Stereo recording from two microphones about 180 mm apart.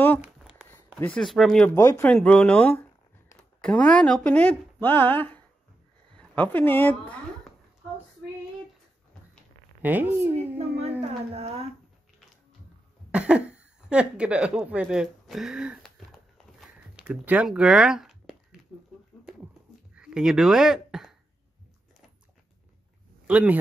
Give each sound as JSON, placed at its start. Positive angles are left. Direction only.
{"t": 0.2, "sound": "a sound", "side_deg": -5}
{"t": 0.9, "sound": "speech", "side_deg": 5}
{"t": 1.8, "sound": "speech", "side_deg": 15}
{"t": 9.8, "sound": "a woman's voice", "side_deg": -10}
{"t": 10.6, "sound": "speech", "side_deg": -35}
{"t": 13.1, "sound": "speech", "side_deg": -5}
{"t": 16.5, "sound": "a sound", "side_deg": -5}
{"t": 20.0, "sound": "speech", "side_deg": -5}
{"t": 23.2, "sound": "speech", "side_deg": -5}